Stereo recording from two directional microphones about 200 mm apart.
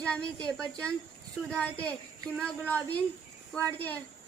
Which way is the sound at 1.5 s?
5° left (ahead or behind).